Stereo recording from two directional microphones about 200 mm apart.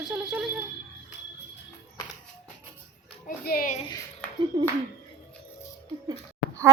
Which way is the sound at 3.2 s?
45° left (ahead or behind).